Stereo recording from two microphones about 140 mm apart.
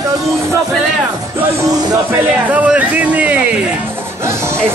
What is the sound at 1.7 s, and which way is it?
Music, 25° right (ahead or behind).